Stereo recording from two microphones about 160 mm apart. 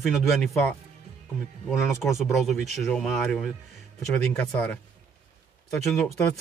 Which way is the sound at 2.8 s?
Centre (ahead or behind).